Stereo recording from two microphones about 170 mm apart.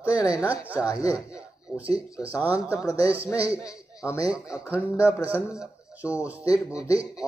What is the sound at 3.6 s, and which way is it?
Speech, 20° left (ahead or behind).